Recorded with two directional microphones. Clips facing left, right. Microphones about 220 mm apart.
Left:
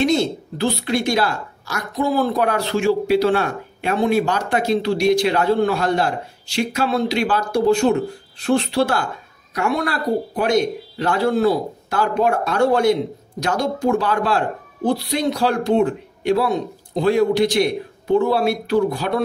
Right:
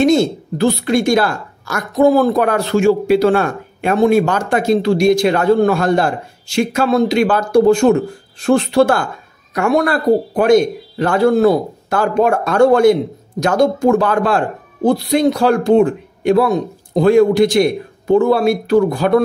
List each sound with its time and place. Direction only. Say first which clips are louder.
0.0 s a woman's voice: right 6 dB; 45° right (ahead or behind)